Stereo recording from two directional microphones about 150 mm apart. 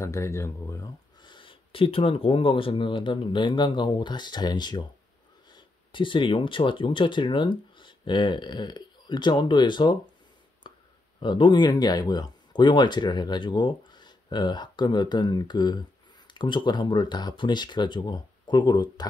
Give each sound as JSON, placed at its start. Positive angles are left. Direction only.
{"t": 0.0, "sound": "speech", "side_deg": 20}
{"t": 10.6, "sound": "a sound", "side_deg": 30}
{"t": 11.1, "sound": "speech", "side_deg": 35}